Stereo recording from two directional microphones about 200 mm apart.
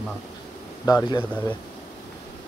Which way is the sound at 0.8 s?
20° left (ahead or behind).